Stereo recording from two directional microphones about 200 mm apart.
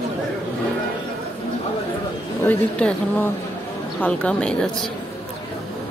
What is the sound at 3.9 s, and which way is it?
Speech, 5° left (ahead or behind).